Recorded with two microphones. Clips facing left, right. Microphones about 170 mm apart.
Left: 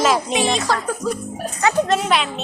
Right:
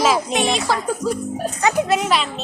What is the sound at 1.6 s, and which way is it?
Speech, 15° right (ahead or behind).